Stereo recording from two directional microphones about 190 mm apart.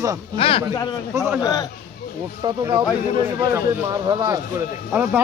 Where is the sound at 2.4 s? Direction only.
25° right (ahead or behind).